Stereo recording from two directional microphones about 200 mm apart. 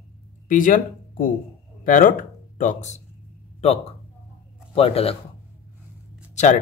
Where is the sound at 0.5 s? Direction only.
40° left (ahead or behind).